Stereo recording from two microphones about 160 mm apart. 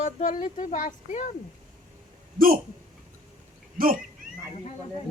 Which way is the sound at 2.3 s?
60° right (ahead or behind).